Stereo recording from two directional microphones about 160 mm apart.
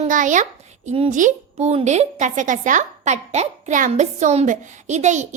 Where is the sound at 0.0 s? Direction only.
50° right (ahead or behind).